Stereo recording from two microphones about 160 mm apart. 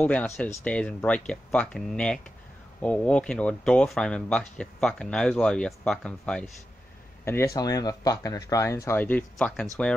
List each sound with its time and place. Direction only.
0.0 s speech: 10° left (ahead or behind)
7.2 s speech: 15° left (ahead or behind)